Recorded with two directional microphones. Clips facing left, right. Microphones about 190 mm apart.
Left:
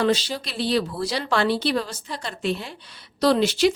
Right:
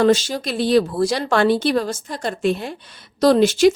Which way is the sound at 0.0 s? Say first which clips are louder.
Right 6 dB; 45° right (ahead or behind).